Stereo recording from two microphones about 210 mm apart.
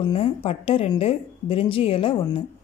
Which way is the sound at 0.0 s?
25° left (ahead or behind).